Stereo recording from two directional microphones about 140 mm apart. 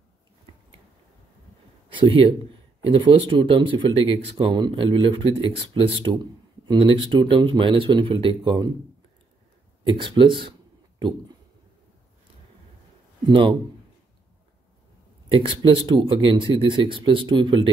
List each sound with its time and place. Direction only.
1.9 s speech: 40° right (ahead or behind)
9.8 s speech: 35° right (ahead or behind)
13.3 s speech: 40° right (ahead or behind)
15.2 s speech: 35° right (ahead or behind)